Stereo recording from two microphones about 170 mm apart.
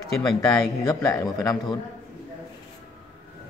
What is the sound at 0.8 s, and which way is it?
Speech, 20° left (ahead or behind).